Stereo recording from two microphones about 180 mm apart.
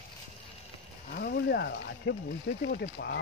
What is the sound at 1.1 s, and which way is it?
Speech, 55° left (ahead or behind).